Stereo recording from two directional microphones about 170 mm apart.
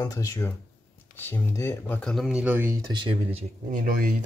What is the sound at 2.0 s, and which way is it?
Speech, centre (ahead or behind).